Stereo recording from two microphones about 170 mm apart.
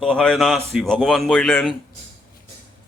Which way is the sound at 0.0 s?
5° left (ahead or behind).